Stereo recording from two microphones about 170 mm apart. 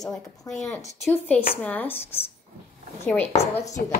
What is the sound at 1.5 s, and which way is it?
Speech, 10° left (ahead or behind).